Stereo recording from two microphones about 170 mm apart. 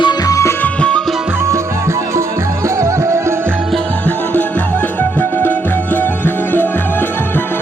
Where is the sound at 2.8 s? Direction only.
15° right (ahead or behind).